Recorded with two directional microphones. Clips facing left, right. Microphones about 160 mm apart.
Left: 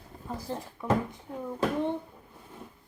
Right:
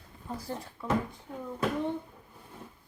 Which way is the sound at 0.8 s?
15° left (ahead or behind).